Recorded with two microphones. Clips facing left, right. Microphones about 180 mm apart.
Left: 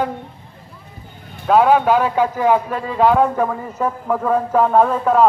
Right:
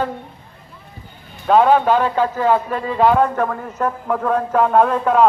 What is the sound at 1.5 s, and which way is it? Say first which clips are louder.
Speech: even; 5° left (ahead or behind).